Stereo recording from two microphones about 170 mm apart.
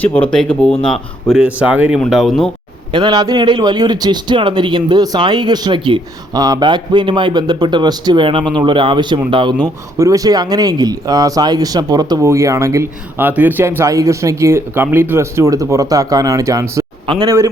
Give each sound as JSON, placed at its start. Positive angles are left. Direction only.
{"t": 0.0, "sound": "speech", "side_deg": 10}
{"t": 1.3, "sound": "speech", "side_deg": -5}
{"t": 2.9, "sound": "speech", "side_deg": -25}